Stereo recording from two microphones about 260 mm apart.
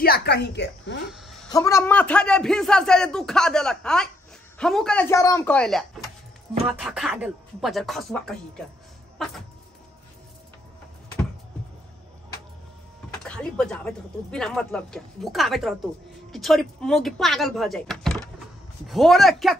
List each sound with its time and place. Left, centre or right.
0.0 s a woman's voice: left
1.1 s a sound: centre
1.5 s speech: centre
13.1 s speech: centre